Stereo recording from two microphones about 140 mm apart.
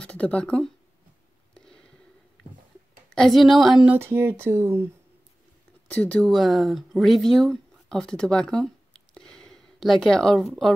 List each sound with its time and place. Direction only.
0.0 s speech: 10° left (ahead or behind)
1.5 s a sound: 5° left (ahead or behind)
3.1 s speech: centre (ahead or behind)
3.9 s speech: 15° right (ahead or behind)
5.9 s speech: 10° left (ahead or behind)